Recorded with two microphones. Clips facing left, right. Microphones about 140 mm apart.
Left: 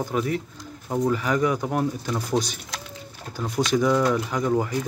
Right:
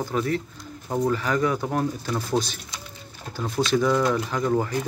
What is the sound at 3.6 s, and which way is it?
Speech, 15° left (ahead or behind).